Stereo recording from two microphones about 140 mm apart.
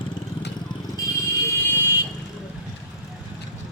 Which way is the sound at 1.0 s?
20° left (ahead or behind).